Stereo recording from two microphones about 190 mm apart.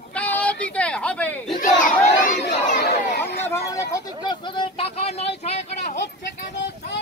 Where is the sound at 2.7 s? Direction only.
45° left (ahead or behind).